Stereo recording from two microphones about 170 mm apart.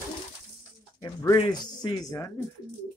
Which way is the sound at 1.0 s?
20° left (ahead or behind).